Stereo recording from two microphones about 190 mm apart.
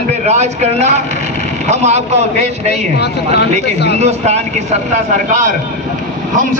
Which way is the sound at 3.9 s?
35° right (ahead or behind).